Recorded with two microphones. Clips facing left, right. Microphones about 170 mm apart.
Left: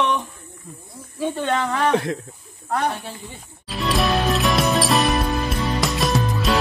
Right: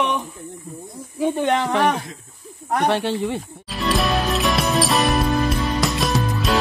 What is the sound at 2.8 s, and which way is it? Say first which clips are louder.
Speech: right 7 dB; 85° right.